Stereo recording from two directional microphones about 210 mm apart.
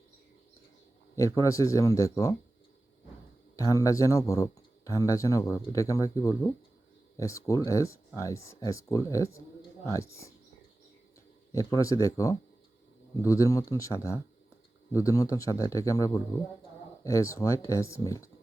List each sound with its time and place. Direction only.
1.1 s speech: 15° left (ahead or behind)
3.5 s speech: 15° left (ahead or behind)
11.5 s speech: 15° left (ahead or behind)